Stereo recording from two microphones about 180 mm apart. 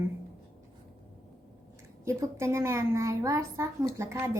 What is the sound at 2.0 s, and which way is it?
A woman's voice, 15° right (ahead or behind).